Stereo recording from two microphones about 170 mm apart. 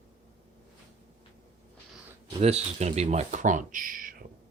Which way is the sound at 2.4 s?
40° right (ahead or behind).